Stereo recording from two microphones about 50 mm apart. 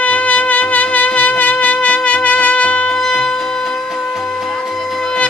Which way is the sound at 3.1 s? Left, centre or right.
Left.